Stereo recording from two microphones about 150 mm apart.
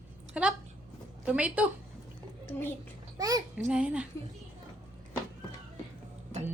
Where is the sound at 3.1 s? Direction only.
25° right (ahead or behind).